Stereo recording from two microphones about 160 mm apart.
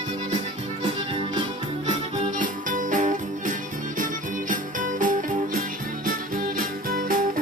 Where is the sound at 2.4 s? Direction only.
55° right (ahead or behind).